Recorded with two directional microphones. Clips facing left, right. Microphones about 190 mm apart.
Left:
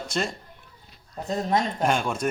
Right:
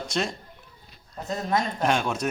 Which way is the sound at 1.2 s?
30° left (ahead or behind).